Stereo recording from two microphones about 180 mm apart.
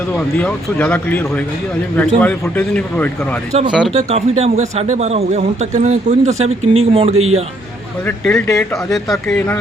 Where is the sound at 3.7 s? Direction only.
5° right (ahead or behind).